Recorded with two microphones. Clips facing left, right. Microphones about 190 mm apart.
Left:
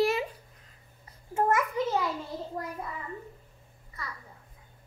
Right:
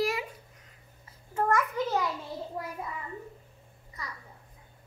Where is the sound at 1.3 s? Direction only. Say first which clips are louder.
Left 1 dB; 25° left (ahead or behind).